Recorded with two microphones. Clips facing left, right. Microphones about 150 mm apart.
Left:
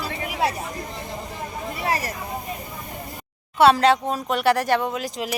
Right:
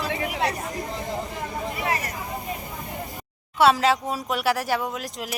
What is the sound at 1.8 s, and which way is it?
Vehicle, 35° left (ahead or behind).